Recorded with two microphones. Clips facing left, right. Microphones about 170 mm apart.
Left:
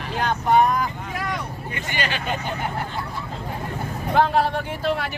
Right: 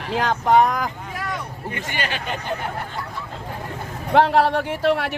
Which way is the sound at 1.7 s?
50° right (ahead or behind).